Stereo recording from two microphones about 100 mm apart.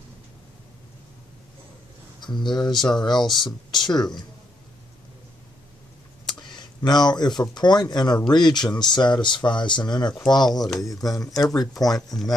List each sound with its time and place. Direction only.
2.4 s speech: 45° left (ahead or behind)
3.3 s speech: 5° left (ahead or behind)
3.8 s speech: 45° left (ahead or behind)
6.5 s speech: 45° left (ahead or behind)